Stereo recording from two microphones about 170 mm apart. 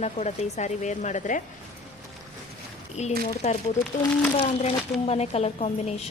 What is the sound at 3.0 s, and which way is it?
A woman's voice, 40° left (ahead or behind).